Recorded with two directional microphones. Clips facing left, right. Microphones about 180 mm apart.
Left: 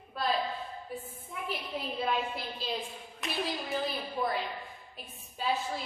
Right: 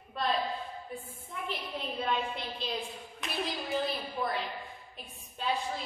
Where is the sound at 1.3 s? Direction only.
5° left (ahead or behind).